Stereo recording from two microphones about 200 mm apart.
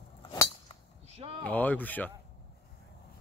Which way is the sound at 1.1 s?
30° right (ahead or behind).